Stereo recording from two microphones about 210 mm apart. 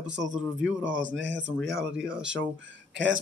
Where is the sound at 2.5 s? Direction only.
60° right (ahead or behind).